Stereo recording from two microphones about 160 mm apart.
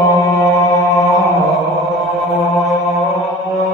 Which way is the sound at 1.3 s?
Centre (ahead or behind).